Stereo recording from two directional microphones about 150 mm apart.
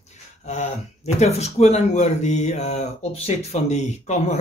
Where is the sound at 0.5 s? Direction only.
50° left (ahead or behind).